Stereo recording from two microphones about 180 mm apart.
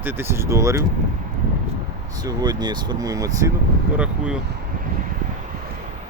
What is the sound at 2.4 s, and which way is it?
Speech, 25° right (ahead or behind).